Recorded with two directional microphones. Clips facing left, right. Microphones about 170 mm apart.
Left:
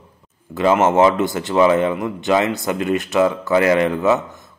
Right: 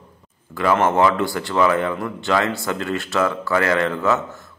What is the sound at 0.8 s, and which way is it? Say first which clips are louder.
A man's voice: left 3 dB; 20° left (ahead or behind).